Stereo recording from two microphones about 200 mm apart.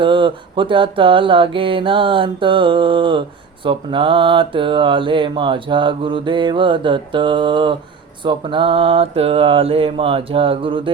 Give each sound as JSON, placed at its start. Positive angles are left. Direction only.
{"t": 0.0, "sound": "mantra", "side_deg": -25}